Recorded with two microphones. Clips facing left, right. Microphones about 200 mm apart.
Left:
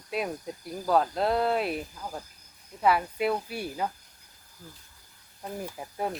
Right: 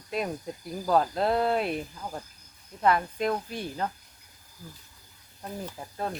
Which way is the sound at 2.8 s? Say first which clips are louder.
Even; 5° left (ahead or behind).